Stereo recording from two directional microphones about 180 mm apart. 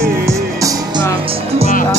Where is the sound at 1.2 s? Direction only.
35° right (ahead or behind).